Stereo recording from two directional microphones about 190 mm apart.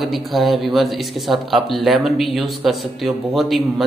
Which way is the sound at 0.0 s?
Centre (ahead or behind).